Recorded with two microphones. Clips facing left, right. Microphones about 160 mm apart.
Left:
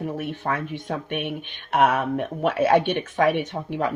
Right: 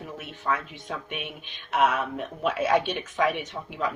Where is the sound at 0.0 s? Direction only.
55° left (ahead or behind).